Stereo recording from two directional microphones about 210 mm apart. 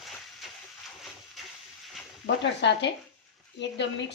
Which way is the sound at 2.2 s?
55° left (ahead or behind).